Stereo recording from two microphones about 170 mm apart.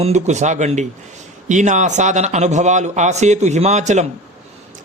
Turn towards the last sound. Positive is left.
turn(degrees=-40)  # may be behind; listen again after turning